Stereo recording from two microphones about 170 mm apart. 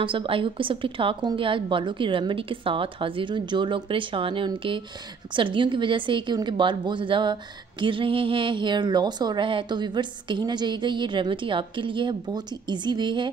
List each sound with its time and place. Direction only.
0.0 s a woman's voice: 30° right (ahead or behind)